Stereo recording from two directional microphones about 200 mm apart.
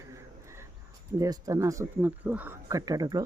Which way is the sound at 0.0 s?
15° right (ahead or behind).